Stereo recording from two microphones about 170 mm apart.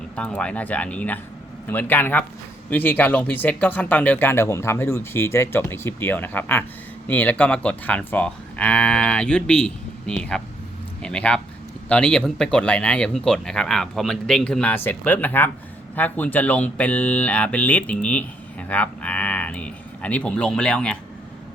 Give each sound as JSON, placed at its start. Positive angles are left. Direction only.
{"t": 0.2, "sound": "speech", "side_deg": 5}